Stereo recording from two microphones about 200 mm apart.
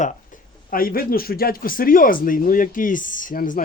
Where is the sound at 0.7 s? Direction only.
45° left (ahead or behind).